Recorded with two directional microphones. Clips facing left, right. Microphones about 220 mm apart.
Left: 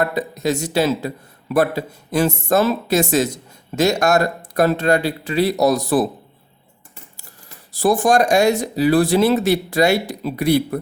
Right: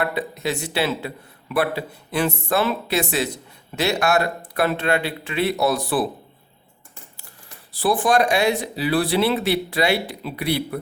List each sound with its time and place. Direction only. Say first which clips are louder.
0.0 s a man's voice: left 4 dB; 45° left (ahead or behind)
7.7 s a man's voice: left 4 dB; 45° left (ahead or behind)